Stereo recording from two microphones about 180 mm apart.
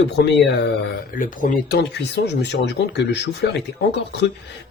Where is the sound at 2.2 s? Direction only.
75° left (ahead or behind).